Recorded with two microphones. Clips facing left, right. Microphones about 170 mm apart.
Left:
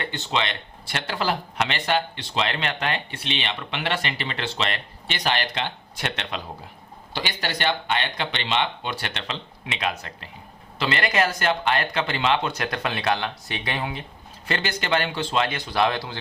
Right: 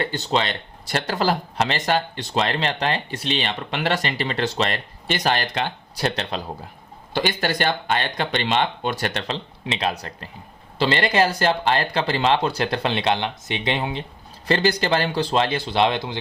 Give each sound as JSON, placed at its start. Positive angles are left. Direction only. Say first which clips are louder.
{"t": 0.0, "sound": "speech", "louder": "right 4 dB", "side_deg": -40}
{"t": 7.1, "sound": "speech", "louder": "right 7 dB", "side_deg": -50}
{"t": 14.4, "sound": "speech", "louder": "right 8 dB", "side_deg": -35}